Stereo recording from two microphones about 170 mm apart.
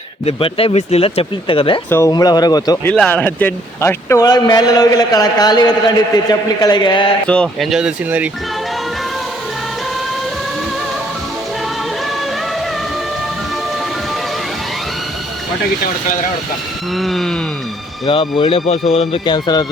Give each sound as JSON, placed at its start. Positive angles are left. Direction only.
{"t": 0.3, "sound": "speech", "side_deg": 30}
{"t": 1.9, "sound": "speech", "side_deg": 20}
{"t": 2.8, "sound": "speech", "side_deg": 10}
{"t": 7.3, "sound": "speech", "side_deg": 5}
{"t": 17.0, "sound": "speech", "side_deg": 0}
{"t": 18.0, "sound": "speech", "side_deg": 30}